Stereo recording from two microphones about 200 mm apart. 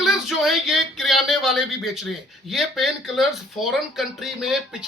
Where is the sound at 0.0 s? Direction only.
Centre (ahead or behind).